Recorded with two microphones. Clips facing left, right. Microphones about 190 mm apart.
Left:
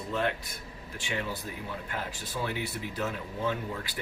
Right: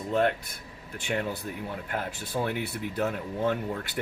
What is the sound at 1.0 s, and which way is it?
Speech, 50° right (ahead or behind).